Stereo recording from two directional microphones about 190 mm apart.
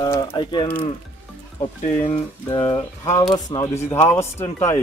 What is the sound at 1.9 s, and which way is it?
Speech, 40° left (ahead or behind).